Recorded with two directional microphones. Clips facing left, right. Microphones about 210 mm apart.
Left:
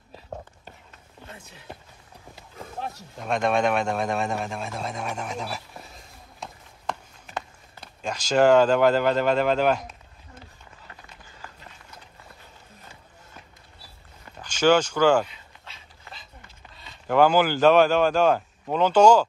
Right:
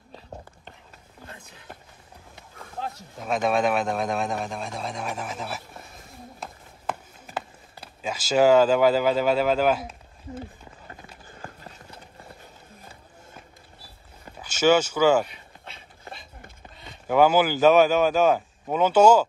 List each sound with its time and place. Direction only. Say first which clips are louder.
2.9 s speech: even; centre (ahead or behind)
6.4 s a sound: even; 5° right (ahead or behind)
11.4 s clip-clop: right 5 dB; 40° right (ahead or behind)
14.4 s speech: even; 5° right (ahead or behind)
16.1 s a sound: right 4 dB; 55° right (ahead or behind)
17.1 s speech: even; 5° right (ahead or behind)